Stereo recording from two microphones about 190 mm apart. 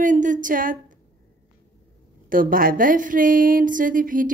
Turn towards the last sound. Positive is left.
turn(degrees=-45)  # may be behind; listen again after turning